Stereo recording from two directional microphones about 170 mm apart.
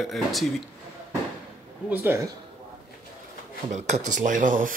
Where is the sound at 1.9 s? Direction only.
15° right (ahead or behind).